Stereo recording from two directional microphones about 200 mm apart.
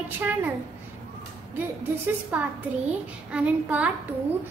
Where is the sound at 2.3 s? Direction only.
5° right (ahead or behind).